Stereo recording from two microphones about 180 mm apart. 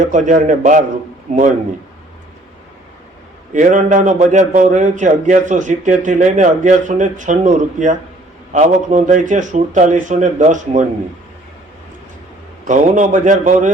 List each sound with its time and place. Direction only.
0.0 s a man's voice: 45° right (ahead or behind)
3.5 s a man's voice: 45° right (ahead or behind)
12.6 s a man's voice: 45° right (ahead or behind)